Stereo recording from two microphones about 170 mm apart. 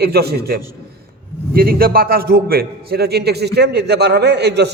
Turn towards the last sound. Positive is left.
turn(degrees=-80)